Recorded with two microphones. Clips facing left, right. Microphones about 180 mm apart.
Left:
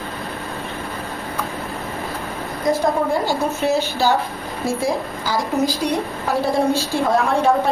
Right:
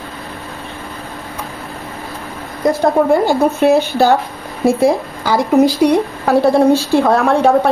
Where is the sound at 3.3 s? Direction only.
55° right (ahead or behind).